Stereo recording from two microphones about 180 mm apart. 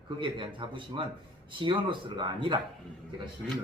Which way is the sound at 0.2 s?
25° right (ahead or behind).